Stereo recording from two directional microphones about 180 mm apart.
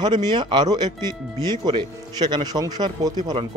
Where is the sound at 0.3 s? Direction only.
25° right (ahead or behind).